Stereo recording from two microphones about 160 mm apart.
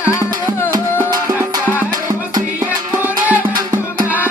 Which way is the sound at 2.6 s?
10° right (ahead or behind).